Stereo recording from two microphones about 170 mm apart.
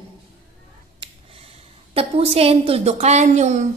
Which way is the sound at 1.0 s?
35° right (ahead or behind).